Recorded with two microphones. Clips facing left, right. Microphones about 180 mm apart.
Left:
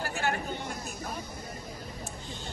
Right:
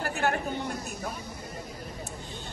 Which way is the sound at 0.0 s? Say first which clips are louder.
Right 3 dB; 55° right (ahead or behind).